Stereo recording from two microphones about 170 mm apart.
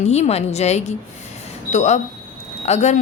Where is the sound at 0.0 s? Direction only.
40° left (ahead or behind).